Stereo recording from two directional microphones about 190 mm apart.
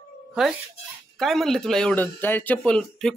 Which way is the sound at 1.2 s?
Centre (ahead or behind).